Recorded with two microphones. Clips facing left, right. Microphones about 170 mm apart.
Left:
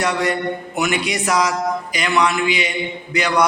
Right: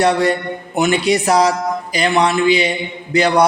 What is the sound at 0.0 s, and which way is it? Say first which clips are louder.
A man's voice: right 5 dB; 35° right (ahead or behind).